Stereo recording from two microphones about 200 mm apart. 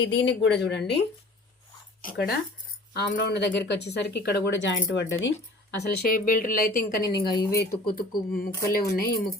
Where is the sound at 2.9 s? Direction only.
55° left (ahead or behind).